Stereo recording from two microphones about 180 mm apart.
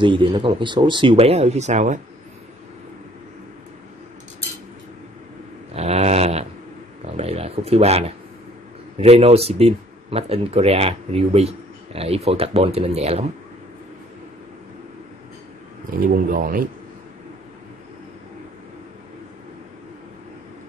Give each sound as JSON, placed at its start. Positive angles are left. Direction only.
{"t": 0.0, "sound": "speech", "side_deg": -25}
{"t": 5.8, "sound": "snoring", "side_deg": -35}
{"t": 7.1, "sound": "a sound", "side_deg": -35}
{"t": 8.9, "sound": "speech", "side_deg": -35}
{"t": 16.0, "sound": "speech", "side_deg": -50}